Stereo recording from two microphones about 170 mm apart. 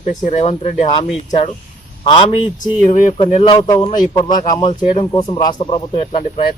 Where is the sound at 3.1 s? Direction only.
30° left (ahead or behind).